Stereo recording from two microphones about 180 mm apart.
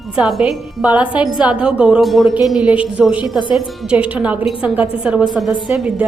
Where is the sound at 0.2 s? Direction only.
5° right (ahead or behind).